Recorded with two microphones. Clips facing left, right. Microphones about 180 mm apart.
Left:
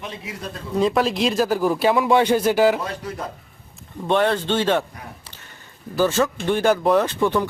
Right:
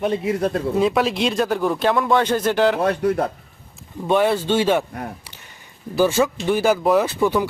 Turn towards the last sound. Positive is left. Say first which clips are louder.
# right 1 dB
turn(degrees=-5)  # may be behind; listen again after turning